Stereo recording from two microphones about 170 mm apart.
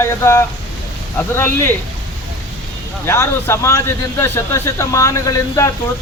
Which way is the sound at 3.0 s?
15° left (ahead or behind).